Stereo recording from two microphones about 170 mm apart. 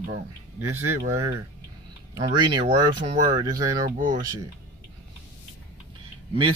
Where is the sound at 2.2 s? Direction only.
40° right (ahead or behind).